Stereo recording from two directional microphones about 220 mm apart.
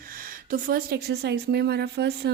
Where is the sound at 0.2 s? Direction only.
40° right (ahead or behind).